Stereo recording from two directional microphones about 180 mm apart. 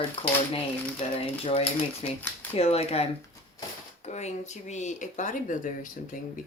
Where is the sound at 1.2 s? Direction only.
30° left (ahead or behind).